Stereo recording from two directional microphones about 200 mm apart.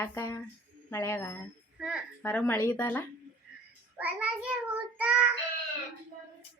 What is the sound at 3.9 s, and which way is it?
Child singing, 5° right (ahead or behind).